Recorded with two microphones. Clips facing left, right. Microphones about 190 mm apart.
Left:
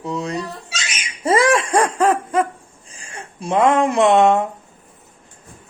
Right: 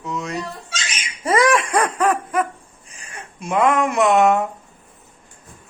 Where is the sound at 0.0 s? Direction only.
30° left (ahead or behind).